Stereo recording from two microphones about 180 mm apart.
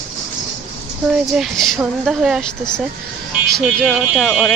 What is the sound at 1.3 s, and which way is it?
Speech, centre (ahead or behind).